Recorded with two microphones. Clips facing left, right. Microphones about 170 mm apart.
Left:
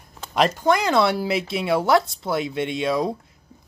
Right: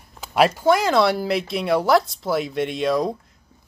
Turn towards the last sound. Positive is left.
turn(degrees=0)  # may be behind; listen again after turning